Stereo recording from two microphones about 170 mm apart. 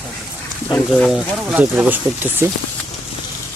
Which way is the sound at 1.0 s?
5° right (ahead or behind).